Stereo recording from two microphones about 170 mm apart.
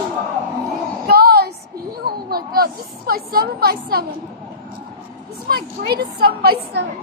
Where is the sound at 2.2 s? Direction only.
60° right (ahead or behind).